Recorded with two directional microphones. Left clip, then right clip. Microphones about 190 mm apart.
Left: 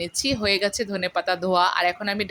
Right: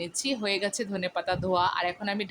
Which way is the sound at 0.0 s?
15° left (ahead or behind).